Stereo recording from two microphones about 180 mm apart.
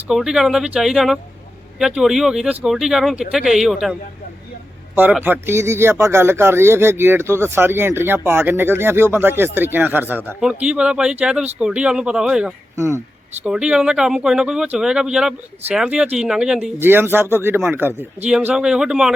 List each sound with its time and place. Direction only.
0.1 s speech: 5° right (ahead or behind)
4.9 s speech: 10° right (ahead or behind)
12.7 s speech: 15° right (ahead or behind)
13.4 s speech: 5° right (ahead or behind)